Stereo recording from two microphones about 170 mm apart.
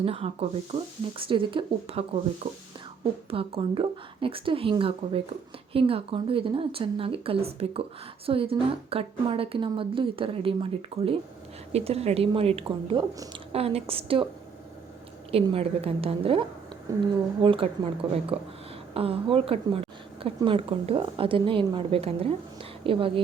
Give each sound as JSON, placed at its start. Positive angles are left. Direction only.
{"t": 0.0, "sound": "speech", "side_deg": -35}
{"t": 15.3, "sound": "speech", "side_deg": -35}